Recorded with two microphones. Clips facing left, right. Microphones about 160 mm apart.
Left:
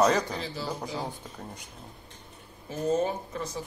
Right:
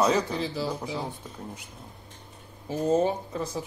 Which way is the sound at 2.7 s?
30° right (ahead or behind).